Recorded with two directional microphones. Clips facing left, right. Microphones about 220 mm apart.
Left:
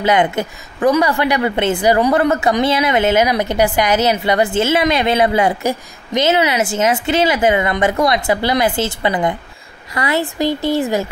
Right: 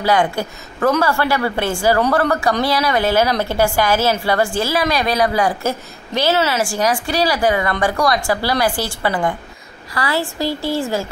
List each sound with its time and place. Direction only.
0.0 s a woman's voice: 20° left (ahead or behind)